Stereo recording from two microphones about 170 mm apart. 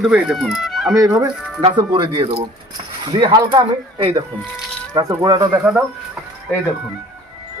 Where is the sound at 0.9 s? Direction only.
20° right (ahead or behind).